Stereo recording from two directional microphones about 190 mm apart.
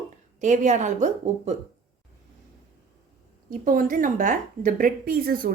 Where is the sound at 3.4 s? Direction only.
45° right (ahead or behind).